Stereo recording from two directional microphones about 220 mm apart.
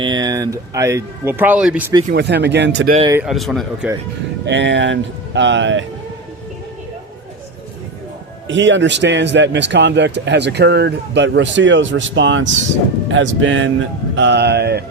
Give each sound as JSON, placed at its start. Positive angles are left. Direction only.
{"t": 0.0, "sound": "speech", "side_deg": -20}
{"t": 2.0, "sound": "speech", "side_deg": -50}
{"t": 3.2, "sound": "speech", "side_deg": 0}
{"t": 4.4, "sound": "speech", "side_deg": -55}
{"t": 8.4, "sound": "speech", "side_deg": -55}